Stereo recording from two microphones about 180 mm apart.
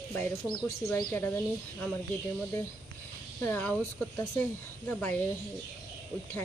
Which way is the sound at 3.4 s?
10° left (ahead or behind).